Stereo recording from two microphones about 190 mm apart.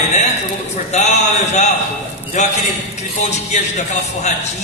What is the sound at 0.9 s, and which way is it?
A man's voice, 35° left (ahead or behind).